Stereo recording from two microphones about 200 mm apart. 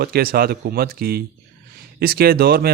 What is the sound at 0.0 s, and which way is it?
A man's voice, 50° right (ahead or behind).